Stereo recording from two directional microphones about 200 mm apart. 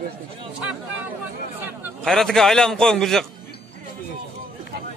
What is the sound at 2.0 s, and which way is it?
A man's voice, centre (ahead or behind).